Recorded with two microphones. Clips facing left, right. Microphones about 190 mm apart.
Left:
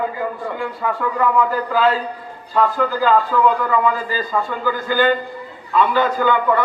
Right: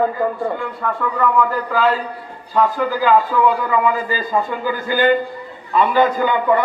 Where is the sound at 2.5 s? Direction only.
10° right (ahead or behind).